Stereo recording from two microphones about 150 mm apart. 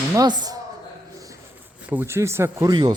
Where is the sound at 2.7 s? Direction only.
30° right (ahead or behind).